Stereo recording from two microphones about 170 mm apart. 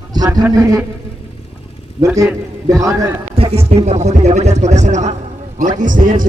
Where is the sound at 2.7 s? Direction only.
20° right (ahead or behind).